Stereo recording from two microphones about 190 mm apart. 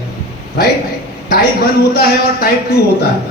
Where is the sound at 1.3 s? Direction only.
55° left (ahead or behind).